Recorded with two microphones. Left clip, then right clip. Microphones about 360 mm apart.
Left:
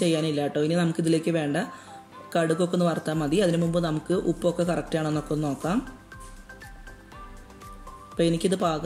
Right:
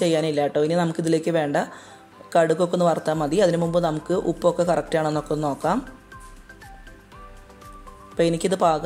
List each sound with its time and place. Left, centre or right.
0.0 s speech: centre
8.2 s speech: centre